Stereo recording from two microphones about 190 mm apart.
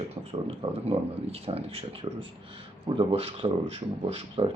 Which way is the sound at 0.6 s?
30° right (ahead or behind).